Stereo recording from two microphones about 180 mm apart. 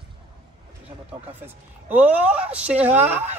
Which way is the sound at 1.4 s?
10° right (ahead or behind).